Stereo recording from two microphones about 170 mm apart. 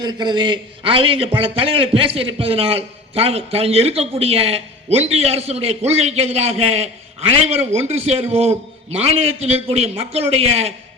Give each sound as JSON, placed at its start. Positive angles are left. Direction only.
{"t": 0.0, "sound": "a man's voice", "side_deg": -25}